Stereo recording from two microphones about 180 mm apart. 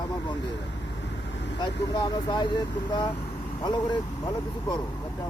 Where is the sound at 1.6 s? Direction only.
25° left (ahead or behind).